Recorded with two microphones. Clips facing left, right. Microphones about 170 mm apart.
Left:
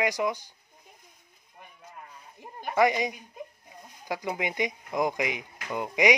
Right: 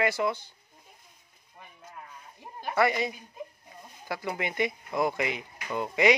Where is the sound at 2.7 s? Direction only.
15° left (ahead or behind).